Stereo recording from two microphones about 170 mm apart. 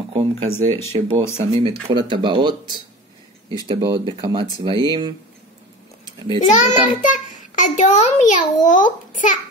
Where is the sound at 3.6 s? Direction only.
30° right (ahead or behind).